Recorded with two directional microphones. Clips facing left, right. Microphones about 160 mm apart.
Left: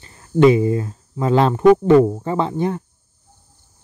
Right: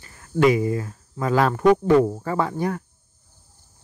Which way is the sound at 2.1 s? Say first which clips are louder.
Left 3 dB; 20° left (ahead or behind).